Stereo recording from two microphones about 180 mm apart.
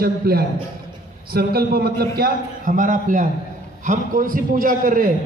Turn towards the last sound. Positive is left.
turn(degrees=-50)  # may be behind; listen again after turning